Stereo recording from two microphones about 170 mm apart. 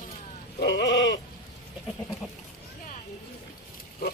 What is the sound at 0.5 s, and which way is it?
Sheep, 90° left.